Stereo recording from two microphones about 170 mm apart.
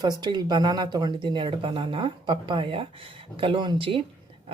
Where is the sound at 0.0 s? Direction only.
25° right (ahead or behind).